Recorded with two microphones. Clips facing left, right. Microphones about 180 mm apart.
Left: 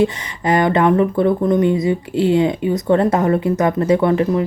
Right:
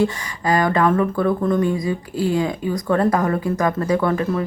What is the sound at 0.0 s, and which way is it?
Speech, 25° left (ahead or behind).